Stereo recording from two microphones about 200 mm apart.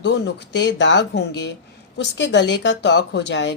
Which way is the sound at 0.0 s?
60° left (ahead or behind).